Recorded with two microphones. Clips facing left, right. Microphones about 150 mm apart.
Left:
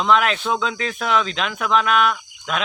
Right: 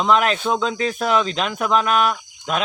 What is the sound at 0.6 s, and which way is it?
Speech, 40° right (ahead or behind).